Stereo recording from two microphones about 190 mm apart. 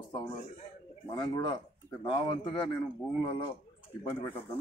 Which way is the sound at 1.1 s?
20° left (ahead or behind).